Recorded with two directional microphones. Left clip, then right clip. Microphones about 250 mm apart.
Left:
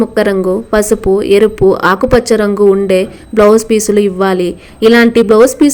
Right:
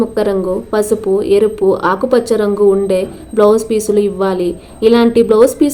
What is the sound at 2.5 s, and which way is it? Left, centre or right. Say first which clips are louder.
Speech: left 2 dB; left.